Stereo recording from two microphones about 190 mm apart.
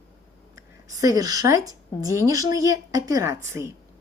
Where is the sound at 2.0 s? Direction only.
20° right (ahead or behind).